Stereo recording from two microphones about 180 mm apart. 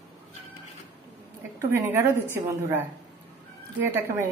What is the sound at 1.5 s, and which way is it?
A woman's voice, 15° right (ahead or behind).